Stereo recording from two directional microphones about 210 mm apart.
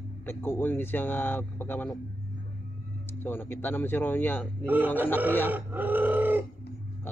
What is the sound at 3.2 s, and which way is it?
Speech, 10° left (ahead or behind).